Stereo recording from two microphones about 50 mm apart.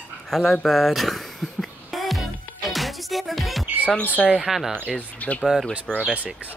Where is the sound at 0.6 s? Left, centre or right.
Centre.